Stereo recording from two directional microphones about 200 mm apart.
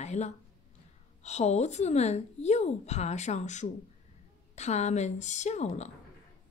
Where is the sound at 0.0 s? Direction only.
35° left (ahead or behind).